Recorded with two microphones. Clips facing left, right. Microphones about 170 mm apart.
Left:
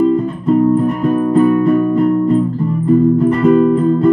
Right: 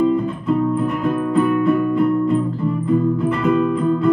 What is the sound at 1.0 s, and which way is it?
Music, 40° left (ahead or behind).